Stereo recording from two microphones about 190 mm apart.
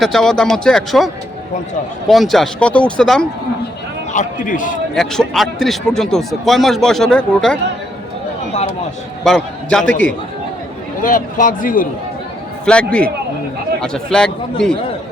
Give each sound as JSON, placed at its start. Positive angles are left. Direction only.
{"t": 0.0, "sound": "a man's voice", "side_deg": 0}
{"t": 4.1, "sound": "speech", "side_deg": 40}
{"t": 4.9, "sound": "a man's voice", "side_deg": 0}
{"t": 9.2, "sound": "a man's voice", "side_deg": 5}
{"t": 11.0, "sound": "speech", "side_deg": 45}
{"t": 12.7, "sound": "a man's voice", "side_deg": 5}
{"t": 13.8, "sound": "a man's voice", "side_deg": 5}